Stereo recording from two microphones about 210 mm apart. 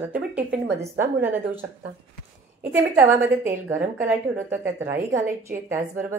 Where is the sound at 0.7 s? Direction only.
10° right (ahead or behind).